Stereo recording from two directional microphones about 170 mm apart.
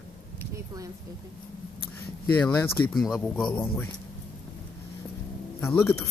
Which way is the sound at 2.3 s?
10° left (ahead or behind).